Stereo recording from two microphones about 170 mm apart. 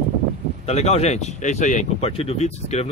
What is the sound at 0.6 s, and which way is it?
Speech, 40° left (ahead or behind).